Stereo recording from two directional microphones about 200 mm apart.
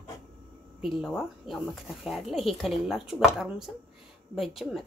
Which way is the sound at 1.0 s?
Centre (ahead or behind).